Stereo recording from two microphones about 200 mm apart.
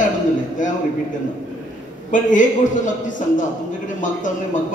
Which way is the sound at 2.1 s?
40° left (ahead or behind).